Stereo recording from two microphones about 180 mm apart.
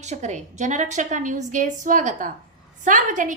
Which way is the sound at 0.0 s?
40° right (ahead or behind).